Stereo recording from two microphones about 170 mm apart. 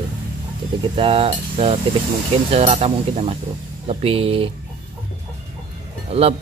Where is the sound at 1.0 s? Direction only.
30° right (ahead or behind).